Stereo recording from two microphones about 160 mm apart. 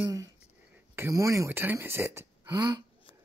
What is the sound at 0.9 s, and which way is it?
Speech, 15° right (ahead or behind).